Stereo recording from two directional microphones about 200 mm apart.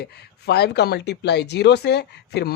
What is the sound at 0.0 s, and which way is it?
Speech, 55° left (ahead or behind).